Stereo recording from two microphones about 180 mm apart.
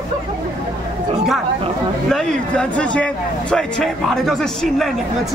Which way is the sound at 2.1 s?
5° left (ahead or behind).